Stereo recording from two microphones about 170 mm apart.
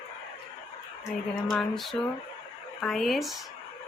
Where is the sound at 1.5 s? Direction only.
Centre (ahead or behind).